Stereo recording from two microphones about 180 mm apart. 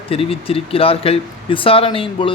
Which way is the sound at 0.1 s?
30° left (ahead or behind).